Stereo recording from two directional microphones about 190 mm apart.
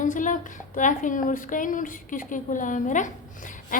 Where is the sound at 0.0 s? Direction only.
40° left (ahead or behind).